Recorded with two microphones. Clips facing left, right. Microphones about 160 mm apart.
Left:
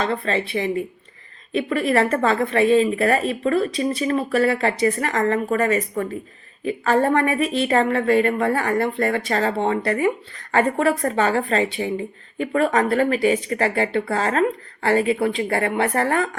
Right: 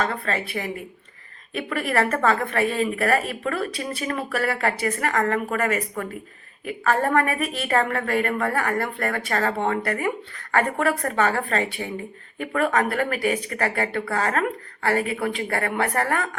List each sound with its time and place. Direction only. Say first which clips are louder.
0.0 s a woman's voice: left 3 dB; 25° left (ahead or behind)